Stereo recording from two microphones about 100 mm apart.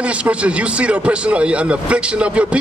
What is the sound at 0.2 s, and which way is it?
A man's voice, 10° right (ahead or behind).